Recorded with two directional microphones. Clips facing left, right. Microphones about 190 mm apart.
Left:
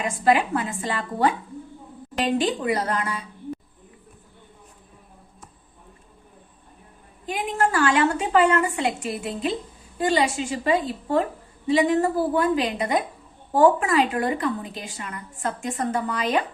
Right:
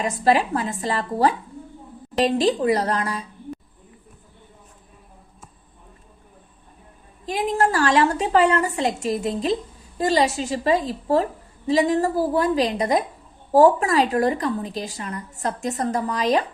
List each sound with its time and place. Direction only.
0.0 s a woman's voice: 35° right (ahead or behind)
7.3 s a woman's voice: 35° right (ahead or behind)